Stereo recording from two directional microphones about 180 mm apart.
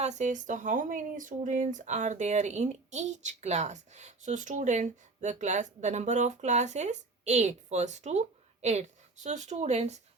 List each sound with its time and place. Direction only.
0.0 s speech: 40° right (ahead or behind)